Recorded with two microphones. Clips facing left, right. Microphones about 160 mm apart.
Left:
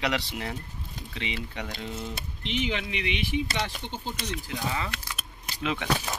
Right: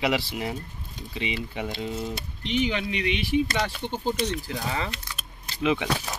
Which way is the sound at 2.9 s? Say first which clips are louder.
Right 4 dB; 45° right (ahead or behind).